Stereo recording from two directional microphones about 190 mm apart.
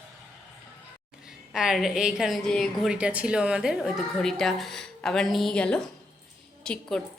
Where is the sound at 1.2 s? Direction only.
5° right (ahead or behind).